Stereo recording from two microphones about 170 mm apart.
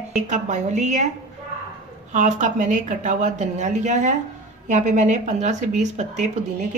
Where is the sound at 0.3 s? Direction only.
45° right (ahead or behind).